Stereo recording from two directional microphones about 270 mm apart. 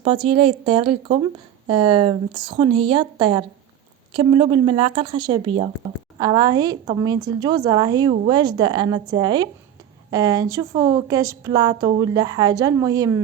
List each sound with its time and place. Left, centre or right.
0.0 s a woman's voice: centre